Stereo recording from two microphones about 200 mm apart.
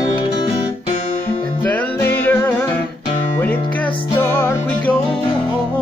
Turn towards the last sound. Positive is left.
turn(degrees=10)  # may be behind; listen again after turning